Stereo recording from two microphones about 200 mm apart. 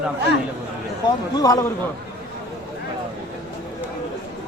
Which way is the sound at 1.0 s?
20° left (ahead or behind).